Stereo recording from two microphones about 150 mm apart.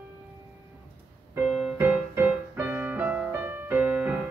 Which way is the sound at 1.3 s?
10° right (ahead or behind).